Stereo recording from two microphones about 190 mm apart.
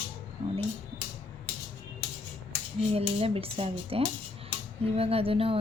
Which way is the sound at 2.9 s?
30° right (ahead or behind).